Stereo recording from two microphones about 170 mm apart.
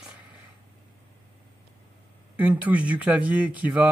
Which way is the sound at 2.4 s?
10° right (ahead or behind).